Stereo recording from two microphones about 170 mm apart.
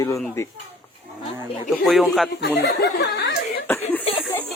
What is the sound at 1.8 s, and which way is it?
Speech, centre (ahead or behind).